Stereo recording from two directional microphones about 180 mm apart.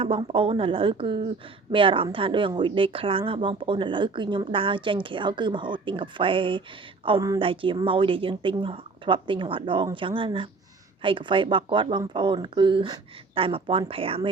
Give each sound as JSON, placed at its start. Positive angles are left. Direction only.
{"t": 0.0, "sound": "speech", "side_deg": -30}